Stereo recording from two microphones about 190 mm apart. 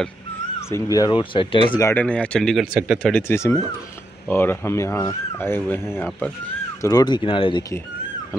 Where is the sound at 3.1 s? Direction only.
10° left (ahead or behind).